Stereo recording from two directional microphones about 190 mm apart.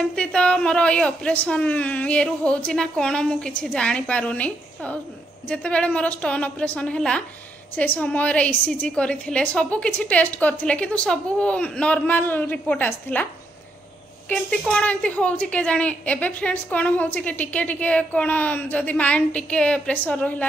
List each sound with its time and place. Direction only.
0.1 s speech: 5° left (ahead or behind)
14.3 s speech: 5° left (ahead or behind)